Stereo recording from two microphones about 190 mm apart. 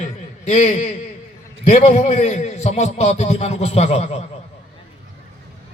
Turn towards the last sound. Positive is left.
turn(degrees=35)  # may be behind; listen again after turning